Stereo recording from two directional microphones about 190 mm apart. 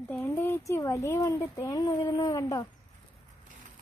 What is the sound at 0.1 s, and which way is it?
Speech, 10° left (ahead or behind).